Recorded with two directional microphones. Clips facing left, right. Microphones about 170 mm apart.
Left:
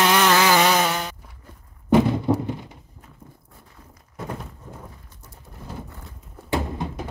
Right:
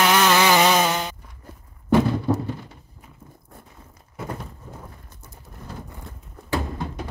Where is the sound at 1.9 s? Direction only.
20° left (ahead or behind).